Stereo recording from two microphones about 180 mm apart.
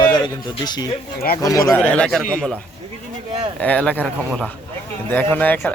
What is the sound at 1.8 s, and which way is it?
Speech, 5° left (ahead or behind).